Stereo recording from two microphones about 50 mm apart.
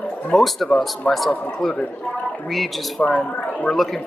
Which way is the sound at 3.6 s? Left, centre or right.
Centre.